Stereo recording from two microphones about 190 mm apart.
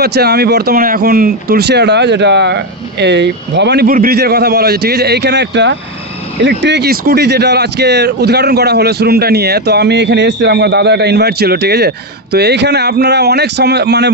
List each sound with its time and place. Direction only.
0.0 s speech: 60° right (ahead or behind)